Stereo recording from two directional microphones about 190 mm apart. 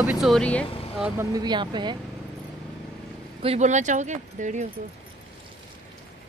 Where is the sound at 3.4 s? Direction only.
35° right (ahead or behind).